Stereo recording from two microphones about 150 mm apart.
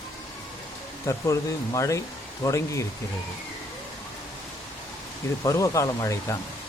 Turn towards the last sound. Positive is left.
turn(degrees=20)  # may be behind; listen again after turning